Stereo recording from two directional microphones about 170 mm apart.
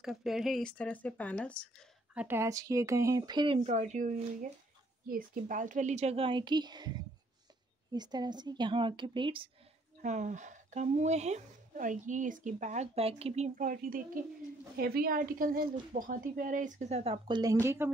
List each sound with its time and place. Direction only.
0.0 s speech: centre (ahead or behind)
2.1 s a woman's voice: 15° right (ahead or behind)
3.6 s a woman's voice: 45° right (ahead or behind); by 9.5 s 30° right (ahead or behind)
10.0 s speech: 45° right (ahead or behind)
13.6 s speech: 55° right (ahead or behind); by 17.4 s 35° right (ahead or behind)
17.4 s speech: 20° right (ahead or behind)